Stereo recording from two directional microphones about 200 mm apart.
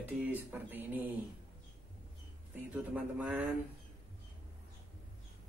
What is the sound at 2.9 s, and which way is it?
Speech, 5° right (ahead or behind).